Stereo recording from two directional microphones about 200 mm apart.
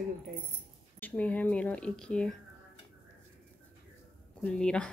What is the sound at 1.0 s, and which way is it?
Speech, 5° left (ahead or behind).